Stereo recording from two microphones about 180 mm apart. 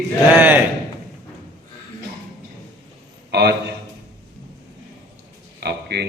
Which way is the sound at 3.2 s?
65° right (ahead or behind).